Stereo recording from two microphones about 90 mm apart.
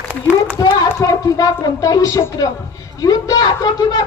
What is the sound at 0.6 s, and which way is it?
A woman's voice, 45° left (ahead or behind).